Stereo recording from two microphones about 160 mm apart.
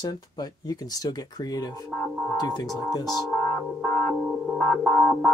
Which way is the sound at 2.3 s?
25° left (ahead or behind).